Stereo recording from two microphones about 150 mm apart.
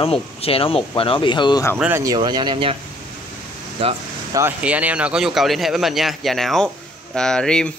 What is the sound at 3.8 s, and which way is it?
Speech, 40° right (ahead or behind).